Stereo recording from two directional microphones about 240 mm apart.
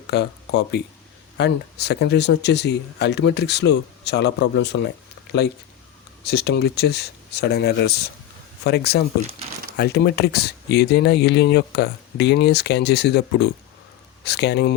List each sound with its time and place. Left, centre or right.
0.1 s speech: left
6.2 s speech: left